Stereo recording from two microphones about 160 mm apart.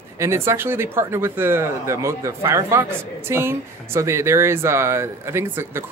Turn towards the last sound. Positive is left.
turn(degrees=-15)  # may be behind; listen again after turning